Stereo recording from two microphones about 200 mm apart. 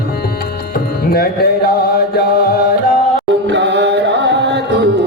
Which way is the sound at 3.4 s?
65° right (ahead or behind).